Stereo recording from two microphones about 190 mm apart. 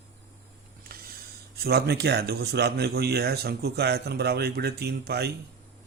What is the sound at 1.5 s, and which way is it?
Speech, 55° right (ahead or behind).